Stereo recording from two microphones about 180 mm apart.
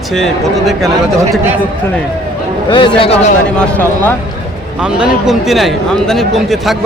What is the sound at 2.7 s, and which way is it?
Speech, 30° left (ahead or behind).